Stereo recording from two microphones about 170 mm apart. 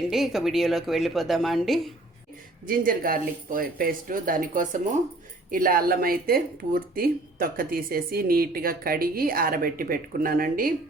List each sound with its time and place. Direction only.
0.1 s a woman's voice: centre (ahead or behind)
2.6 s speech: 55° right (ahead or behind)